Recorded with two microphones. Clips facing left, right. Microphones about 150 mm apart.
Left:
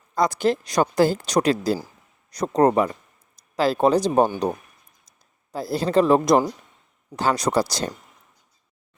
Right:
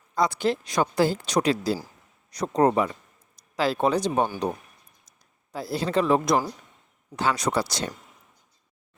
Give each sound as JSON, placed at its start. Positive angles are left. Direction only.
{"t": 0.1, "sound": "speech", "side_deg": 45}
{"t": 5.5, "sound": "speech", "side_deg": 40}